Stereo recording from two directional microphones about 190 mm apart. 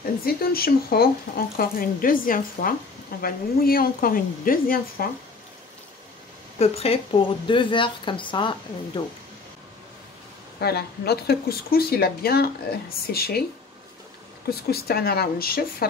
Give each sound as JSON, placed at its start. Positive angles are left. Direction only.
{"t": 0.2, "sound": "speech", "side_deg": 55}
{"t": 6.6, "sound": "speech", "side_deg": 30}
{"t": 10.6, "sound": "speech", "side_deg": 55}
{"t": 14.5, "sound": "speech", "side_deg": 55}